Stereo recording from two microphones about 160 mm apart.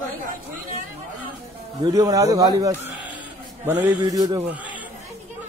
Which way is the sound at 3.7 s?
10° right (ahead or behind).